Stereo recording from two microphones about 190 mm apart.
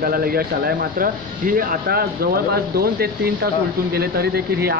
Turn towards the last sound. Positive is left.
turn(degrees=-55)  # may be behind; listen again after turning